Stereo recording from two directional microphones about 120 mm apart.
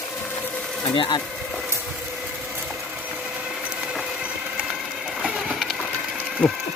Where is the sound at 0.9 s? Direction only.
45° left (ahead or behind).